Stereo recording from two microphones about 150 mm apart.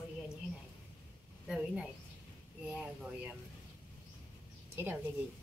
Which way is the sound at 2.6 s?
5° right (ahead or behind).